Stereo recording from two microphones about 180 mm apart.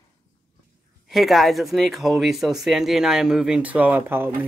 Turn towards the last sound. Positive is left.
turn(degrees=-10)  # may be behind; listen again after turning